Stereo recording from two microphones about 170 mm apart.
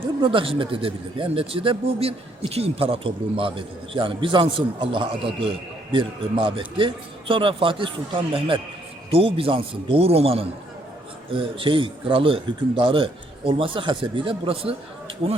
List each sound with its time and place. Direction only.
0.2 s speech: 30° right (ahead or behind)